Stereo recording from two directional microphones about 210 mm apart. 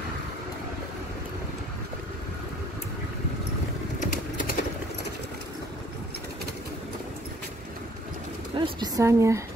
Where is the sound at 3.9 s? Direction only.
40° left (ahead or behind).